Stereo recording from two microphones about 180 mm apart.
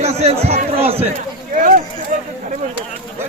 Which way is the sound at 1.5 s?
50° right (ahead or behind).